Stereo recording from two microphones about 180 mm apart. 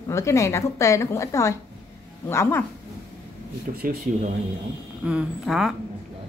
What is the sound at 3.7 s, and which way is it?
Speech, 45° right (ahead or behind).